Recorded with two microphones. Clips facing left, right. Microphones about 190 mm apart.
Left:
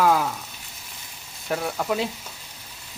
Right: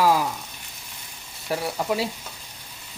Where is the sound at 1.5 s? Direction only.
5° right (ahead or behind).